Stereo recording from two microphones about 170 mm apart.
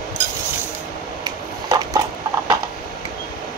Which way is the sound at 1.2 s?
20° right (ahead or behind).